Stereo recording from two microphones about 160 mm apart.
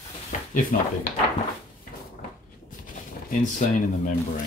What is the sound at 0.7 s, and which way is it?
Speech, 55° left (ahead or behind).